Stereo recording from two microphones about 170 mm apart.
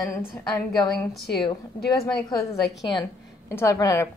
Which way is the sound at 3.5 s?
20° left (ahead or behind).